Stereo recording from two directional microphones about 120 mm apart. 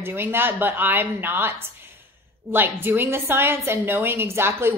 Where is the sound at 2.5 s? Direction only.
15° right (ahead or behind).